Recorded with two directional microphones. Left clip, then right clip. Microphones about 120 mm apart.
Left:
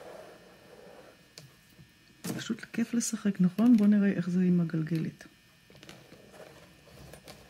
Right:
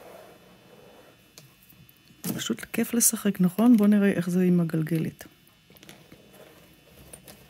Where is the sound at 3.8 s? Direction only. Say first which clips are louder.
Right 5 dB; 85° right.